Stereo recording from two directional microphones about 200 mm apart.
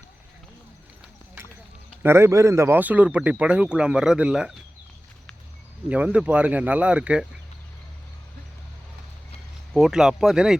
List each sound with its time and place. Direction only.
1.4 s clip-clop: 10° right (ahead or behind)
1.9 s speech: 10° right (ahead or behind)
5.9 s speech: 5° right (ahead or behind)
9.7 s speech: centre (ahead or behind)